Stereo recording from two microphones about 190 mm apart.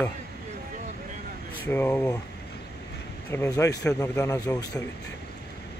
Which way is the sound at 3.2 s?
15° left (ahead or behind).